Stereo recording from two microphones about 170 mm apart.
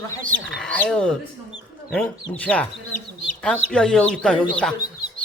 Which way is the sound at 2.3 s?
10° left (ahead or behind).